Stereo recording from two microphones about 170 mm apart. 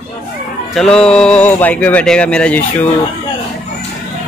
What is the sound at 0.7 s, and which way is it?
Speech, 5° left (ahead or behind).